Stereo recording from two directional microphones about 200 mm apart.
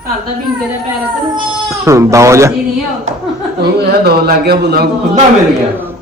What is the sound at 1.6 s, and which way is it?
Speech, 15° right (ahead or behind).